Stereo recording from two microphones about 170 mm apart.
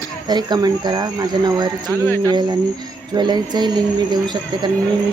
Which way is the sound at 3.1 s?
25° right (ahead or behind).